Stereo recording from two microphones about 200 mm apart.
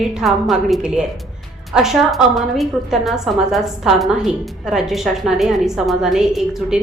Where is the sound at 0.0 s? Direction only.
Centre (ahead or behind).